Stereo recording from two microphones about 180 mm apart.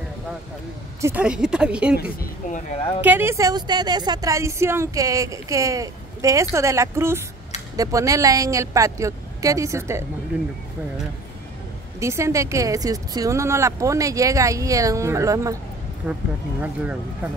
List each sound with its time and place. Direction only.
1.0 s speech: 5° right (ahead or behind)
3.0 s speech: 10° right (ahead or behind)
12.0 s speech: 15° right (ahead or behind)